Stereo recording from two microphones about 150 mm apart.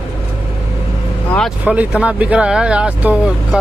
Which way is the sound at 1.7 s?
5° right (ahead or behind).